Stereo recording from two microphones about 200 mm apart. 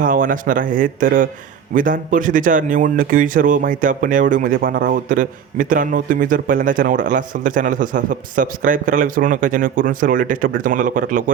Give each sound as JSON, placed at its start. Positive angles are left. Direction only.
{"t": 0.0, "sound": "a man's voice", "side_deg": -40}